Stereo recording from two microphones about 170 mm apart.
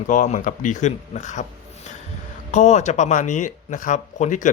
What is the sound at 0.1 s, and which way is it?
Speech, 50° left (ahead or behind).